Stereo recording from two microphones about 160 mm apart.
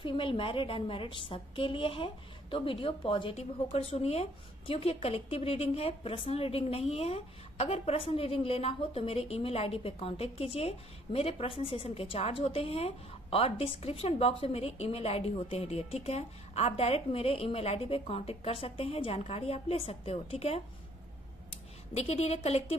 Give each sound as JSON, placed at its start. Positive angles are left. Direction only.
{"t": 0.0, "sound": "a woman's voice", "side_deg": 30}
{"t": 21.9, "sound": "a woman's voice", "side_deg": 40}